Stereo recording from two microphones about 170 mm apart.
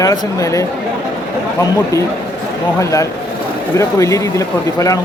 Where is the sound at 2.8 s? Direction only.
20° left (ahead or behind).